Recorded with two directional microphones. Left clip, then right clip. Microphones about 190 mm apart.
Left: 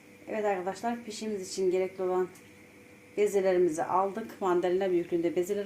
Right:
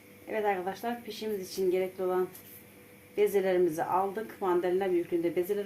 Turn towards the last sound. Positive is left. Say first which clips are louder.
# left 1 dB
turn(degrees=15)  # may be behind; listen again after turning